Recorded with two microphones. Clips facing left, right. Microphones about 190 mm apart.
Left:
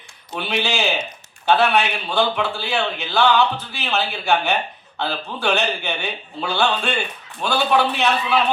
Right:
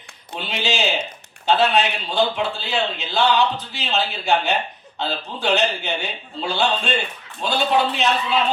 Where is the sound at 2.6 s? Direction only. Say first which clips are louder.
Left 1 dB; 20° right (ahead or behind).